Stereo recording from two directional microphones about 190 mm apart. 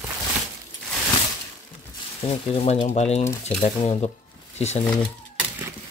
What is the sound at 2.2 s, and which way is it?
Speech, 30° left (ahead or behind).